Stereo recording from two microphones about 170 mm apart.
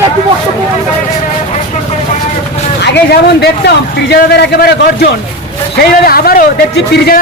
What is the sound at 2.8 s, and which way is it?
A man's voice, 80° left.